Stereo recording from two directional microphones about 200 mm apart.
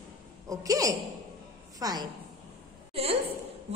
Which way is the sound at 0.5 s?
15° right (ahead or behind).